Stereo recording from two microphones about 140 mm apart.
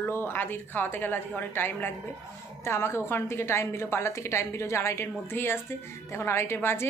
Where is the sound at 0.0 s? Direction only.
15° left (ahead or behind).